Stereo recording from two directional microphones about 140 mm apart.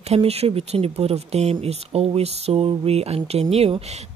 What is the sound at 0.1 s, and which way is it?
Speech, 45° right (ahead or behind).